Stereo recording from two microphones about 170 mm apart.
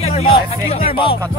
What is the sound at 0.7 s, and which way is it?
Speech, 35° left (ahead or behind).